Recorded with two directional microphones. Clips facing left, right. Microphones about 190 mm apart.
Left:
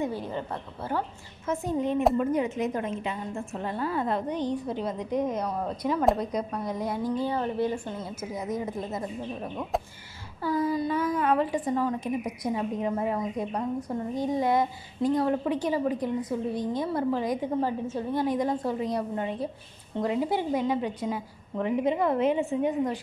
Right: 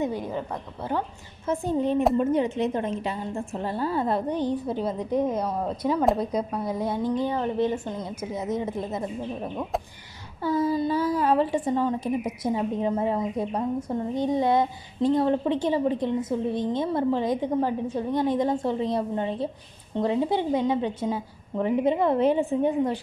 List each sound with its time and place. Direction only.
0.0 s a woman's voice: 15° right (ahead or behind)
1.4 s a woman's voice: 30° right (ahead or behind)
10.4 s a woman's voice: 25° right (ahead or behind)